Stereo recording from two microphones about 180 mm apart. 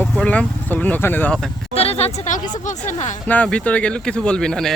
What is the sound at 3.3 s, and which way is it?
Speech, 5° left (ahead or behind).